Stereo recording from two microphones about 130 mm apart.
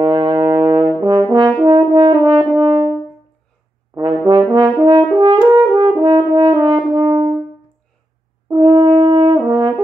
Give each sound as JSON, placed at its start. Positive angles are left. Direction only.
{"t": 0.0, "sound": "brass instrument", "side_deg": -35}
{"t": 1.6, "sound": "french horn", "side_deg": -35}
{"t": 3.9, "sound": "brass instrument", "side_deg": -40}
{"t": 4.7, "sound": "french horn", "side_deg": -40}
{"t": 8.5, "sound": "french horn", "side_deg": -35}